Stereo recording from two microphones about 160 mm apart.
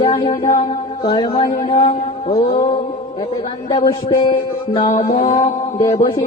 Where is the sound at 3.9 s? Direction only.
30° left (ahead or behind).